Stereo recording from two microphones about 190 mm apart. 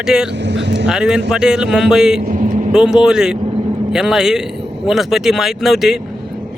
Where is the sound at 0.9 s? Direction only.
5° right (ahead or behind).